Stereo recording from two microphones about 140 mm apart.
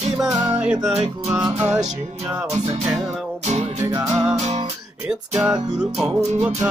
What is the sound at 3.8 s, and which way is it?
Music, 20° right (ahead or behind).